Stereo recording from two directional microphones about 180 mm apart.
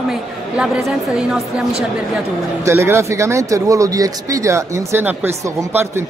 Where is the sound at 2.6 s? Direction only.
15° right (ahead or behind).